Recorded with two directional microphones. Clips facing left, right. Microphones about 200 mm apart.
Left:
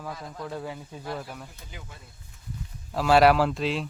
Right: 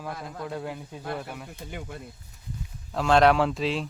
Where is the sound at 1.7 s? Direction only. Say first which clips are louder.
Right 9 dB; 55° right (ahead or behind).